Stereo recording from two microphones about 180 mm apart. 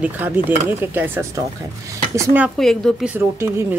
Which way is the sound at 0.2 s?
10° right (ahead or behind).